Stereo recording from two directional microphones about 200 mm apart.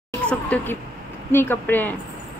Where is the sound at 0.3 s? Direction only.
5° left (ahead or behind).